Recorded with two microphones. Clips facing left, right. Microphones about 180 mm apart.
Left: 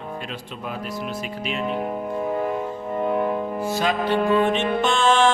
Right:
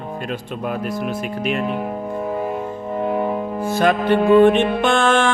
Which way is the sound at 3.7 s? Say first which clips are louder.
Right 6 dB; 55° right (ahead or behind).